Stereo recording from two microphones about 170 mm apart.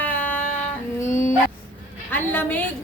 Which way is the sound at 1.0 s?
15° left (ahead or behind).